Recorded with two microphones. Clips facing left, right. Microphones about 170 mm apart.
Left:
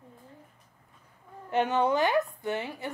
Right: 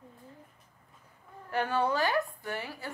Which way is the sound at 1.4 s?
20° left (ahead or behind).